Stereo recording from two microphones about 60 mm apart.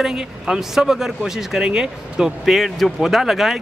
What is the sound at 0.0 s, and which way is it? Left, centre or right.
Speech, centre.